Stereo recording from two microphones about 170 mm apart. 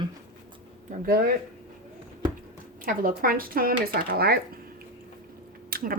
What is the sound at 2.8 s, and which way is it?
Speech, 55° right (ahead or behind).